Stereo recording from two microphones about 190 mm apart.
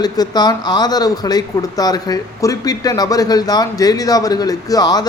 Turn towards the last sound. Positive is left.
turn(degrees=20)  # may be behind; listen again after turning